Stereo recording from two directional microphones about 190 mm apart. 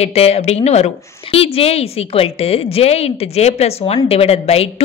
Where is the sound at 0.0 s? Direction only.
35° left (ahead or behind).